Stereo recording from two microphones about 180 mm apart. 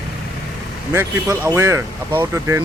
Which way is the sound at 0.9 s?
15° right (ahead or behind).